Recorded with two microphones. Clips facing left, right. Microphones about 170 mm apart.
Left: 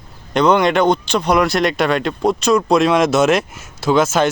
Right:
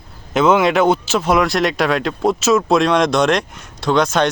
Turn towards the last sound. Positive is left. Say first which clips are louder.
# left 1 dB
turn(degrees=5)  # may be behind; listen again after turning